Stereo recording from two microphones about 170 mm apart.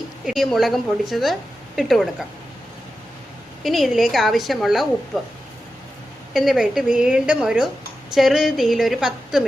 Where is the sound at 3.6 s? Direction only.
Centre (ahead or behind).